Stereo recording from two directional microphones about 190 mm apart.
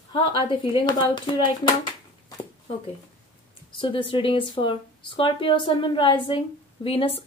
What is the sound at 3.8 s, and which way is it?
Speech, 25° left (ahead or behind).